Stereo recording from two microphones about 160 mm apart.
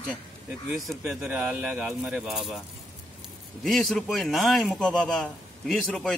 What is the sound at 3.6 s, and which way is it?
A man's voice, centre (ahead or behind).